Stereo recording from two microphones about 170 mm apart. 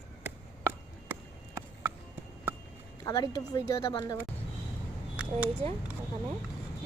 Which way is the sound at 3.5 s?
20° left (ahead or behind).